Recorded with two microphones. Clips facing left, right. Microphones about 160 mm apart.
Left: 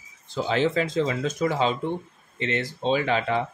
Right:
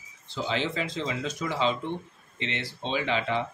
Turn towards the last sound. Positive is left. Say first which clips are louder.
# left 5 dB
turn(degrees=45)  # may be behind; listen again after turning